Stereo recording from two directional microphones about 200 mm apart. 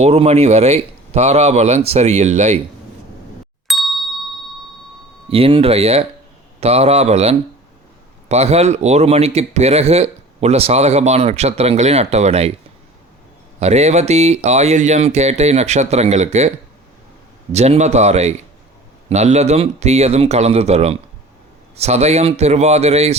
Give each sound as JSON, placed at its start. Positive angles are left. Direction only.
{"t": 0.0, "sound": "speech", "side_deg": -30}
{"t": 3.7, "sound": "ding", "side_deg": 0}
{"t": 5.3, "sound": "speech", "side_deg": -25}
{"t": 13.6, "sound": "speech", "side_deg": -35}
{"t": 17.5, "sound": "speech", "side_deg": -35}